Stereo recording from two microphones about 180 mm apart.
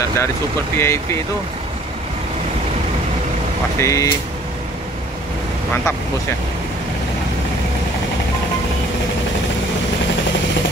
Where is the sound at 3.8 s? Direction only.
15° left (ahead or behind).